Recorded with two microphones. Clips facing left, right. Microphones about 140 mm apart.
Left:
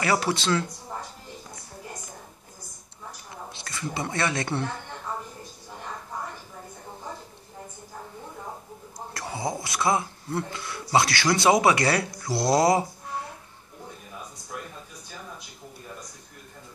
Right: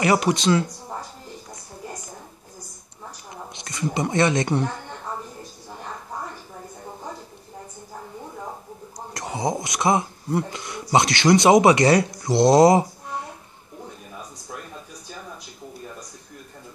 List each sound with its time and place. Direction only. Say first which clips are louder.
0.0 s speech: right 5 dB; 20° right (ahead or behind)
3.5 s speech: right 7 dB; 20° right (ahead or behind)
9.1 s speech: right 5 dB; 20° right (ahead or behind)